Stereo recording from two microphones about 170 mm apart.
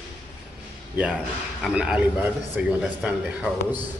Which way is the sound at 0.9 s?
5° right (ahead or behind).